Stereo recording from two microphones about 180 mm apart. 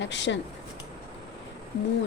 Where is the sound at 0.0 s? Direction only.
80° left.